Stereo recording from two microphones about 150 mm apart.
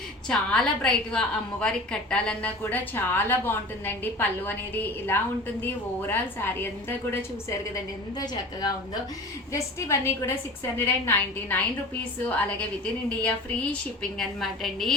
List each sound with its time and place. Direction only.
0.3 s a woman's voice: 5° left (ahead or behind)
9.5 s a woman's voice: 20° left (ahead or behind); by 14.9 s centre (ahead or behind)